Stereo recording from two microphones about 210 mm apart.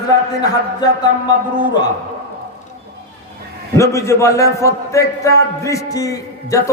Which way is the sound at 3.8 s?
15° left (ahead or behind).